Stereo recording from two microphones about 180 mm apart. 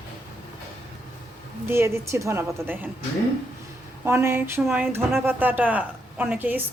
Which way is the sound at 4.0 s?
15° right (ahead or behind).